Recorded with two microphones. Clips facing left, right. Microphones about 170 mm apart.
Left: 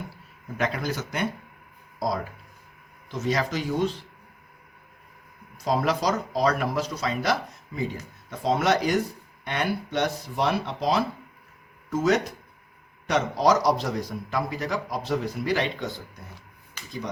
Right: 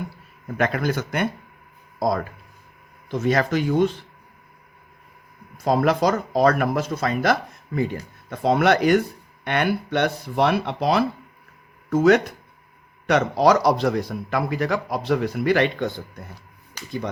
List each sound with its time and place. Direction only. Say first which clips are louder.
0.5 s a man's voice: right 5 dB; 55° right (ahead or behind)
5.6 s a man's voice: right 5 dB; 55° right (ahead or behind)